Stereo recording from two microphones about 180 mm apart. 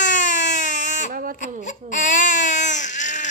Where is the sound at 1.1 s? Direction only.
50° right (ahead or behind).